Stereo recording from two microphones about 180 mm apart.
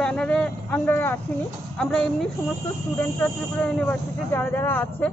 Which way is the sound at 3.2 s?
5° left (ahead or behind).